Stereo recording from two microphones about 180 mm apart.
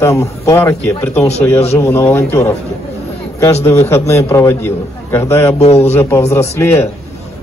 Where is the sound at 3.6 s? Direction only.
15° left (ahead or behind).